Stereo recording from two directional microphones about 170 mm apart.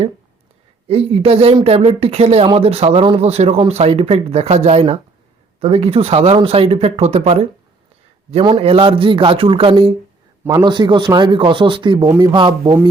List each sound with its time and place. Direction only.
0.9 s speech: 35° right (ahead or behind)
10.4 s a man's voice: 20° right (ahead or behind)